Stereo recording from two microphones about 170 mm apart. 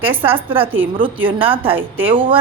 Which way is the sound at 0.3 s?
30° right (ahead or behind).